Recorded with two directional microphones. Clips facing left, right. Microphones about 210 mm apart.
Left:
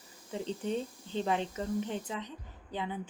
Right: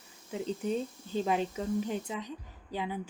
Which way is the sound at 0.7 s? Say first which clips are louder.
Right 1 dB; 10° right (ahead or behind).